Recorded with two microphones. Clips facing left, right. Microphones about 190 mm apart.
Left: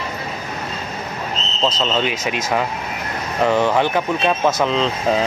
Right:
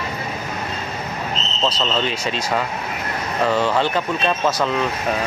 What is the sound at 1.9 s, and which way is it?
Speech, 15° left (ahead or behind).